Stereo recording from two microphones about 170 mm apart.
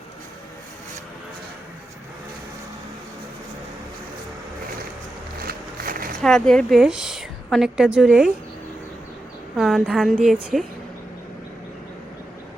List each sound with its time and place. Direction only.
5.4 s a sound: 60° right (ahead or behind)
6.2 s a woman's voice: 5° left (ahead or behind)
9.6 s a woman's voice: centre (ahead or behind)